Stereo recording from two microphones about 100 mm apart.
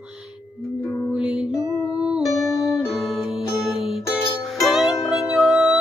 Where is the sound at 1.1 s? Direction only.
5° right (ahead or behind).